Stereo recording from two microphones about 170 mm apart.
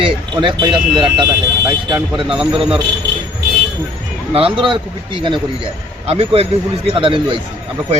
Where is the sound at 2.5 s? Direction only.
30° right (ahead or behind).